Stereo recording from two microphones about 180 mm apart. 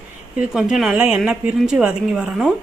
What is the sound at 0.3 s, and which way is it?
A woman's voice, 5° right (ahead or behind).